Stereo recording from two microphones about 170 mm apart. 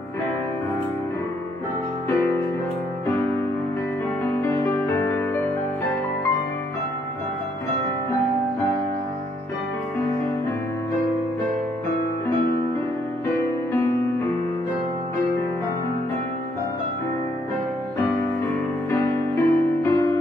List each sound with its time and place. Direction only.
4.4 s music: 15° left (ahead or behind)
18.9 s music: 15° left (ahead or behind)